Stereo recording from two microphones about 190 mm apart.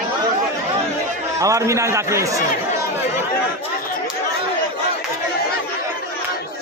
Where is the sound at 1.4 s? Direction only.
15° right (ahead or behind).